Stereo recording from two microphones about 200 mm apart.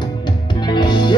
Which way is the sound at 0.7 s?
20° left (ahead or behind).